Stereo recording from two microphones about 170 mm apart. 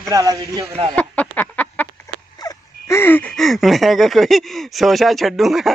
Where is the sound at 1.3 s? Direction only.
10° left (ahead or behind).